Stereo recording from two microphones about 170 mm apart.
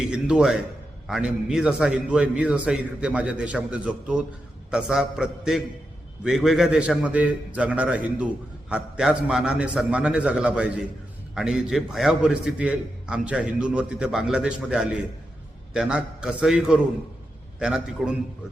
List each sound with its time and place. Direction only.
0.0 s a man's voice: 5° right (ahead or behind)